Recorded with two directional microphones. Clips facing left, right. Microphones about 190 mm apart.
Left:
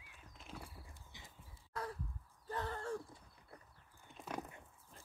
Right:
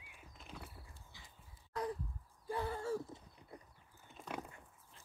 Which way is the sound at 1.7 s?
15° right (ahead or behind).